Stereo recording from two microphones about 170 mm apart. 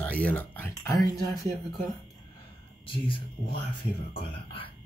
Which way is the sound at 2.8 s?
30° left (ahead or behind).